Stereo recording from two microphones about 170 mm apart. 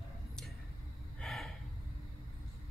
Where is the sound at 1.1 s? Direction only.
Centre (ahead or behind).